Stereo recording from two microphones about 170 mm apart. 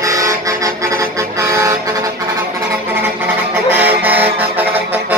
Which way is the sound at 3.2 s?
10° right (ahead or behind).